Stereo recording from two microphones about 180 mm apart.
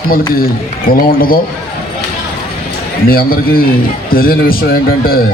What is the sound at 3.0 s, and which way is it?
A man's voice, 55° left (ahead or behind).